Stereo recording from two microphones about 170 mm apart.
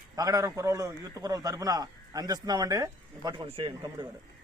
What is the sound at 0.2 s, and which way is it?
A man's voice, 20° right (ahead or behind).